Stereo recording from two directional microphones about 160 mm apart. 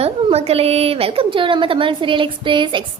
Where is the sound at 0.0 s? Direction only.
40° right (ahead or behind).